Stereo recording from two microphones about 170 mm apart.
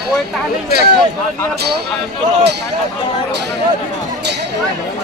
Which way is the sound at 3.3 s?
85° right.